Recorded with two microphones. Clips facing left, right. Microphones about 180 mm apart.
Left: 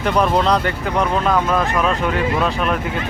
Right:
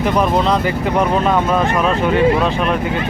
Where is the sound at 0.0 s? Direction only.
5° right (ahead or behind).